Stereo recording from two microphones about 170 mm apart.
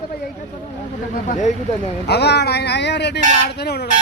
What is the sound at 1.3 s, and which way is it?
Speech, 45° left (ahead or behind).